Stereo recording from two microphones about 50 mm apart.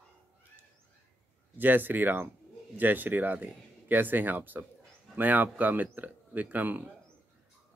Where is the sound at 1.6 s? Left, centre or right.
Right.